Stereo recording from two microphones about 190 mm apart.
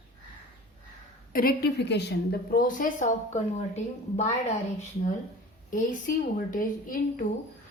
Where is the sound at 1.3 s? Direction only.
50° left (ahead or behind).